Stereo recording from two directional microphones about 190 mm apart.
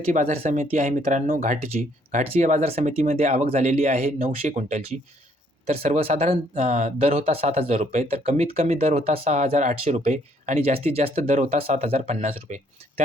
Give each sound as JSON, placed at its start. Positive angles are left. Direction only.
{"t": 0.1, "sound": "speech", "side_deg": -40}